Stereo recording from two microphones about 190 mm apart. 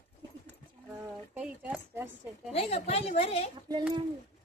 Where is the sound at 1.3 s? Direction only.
5° right (ahead or behind).